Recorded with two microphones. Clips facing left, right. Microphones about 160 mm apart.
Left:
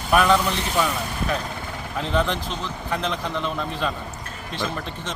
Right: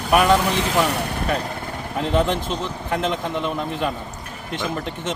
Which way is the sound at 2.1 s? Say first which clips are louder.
Right 3 dB; 20° right (ahead or behind).